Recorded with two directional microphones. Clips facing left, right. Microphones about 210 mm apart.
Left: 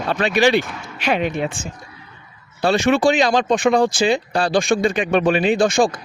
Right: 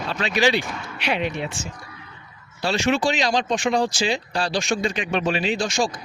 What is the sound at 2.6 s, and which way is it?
Speech, 55° left (ahead or behind).